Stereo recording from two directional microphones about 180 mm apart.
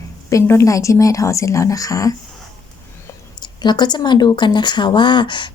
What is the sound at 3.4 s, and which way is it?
Speech, 25° left (ahead or behind).